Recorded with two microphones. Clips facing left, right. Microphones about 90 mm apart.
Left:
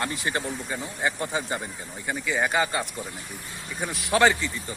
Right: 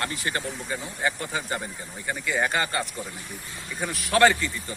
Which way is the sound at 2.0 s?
5° left (ahead or behind).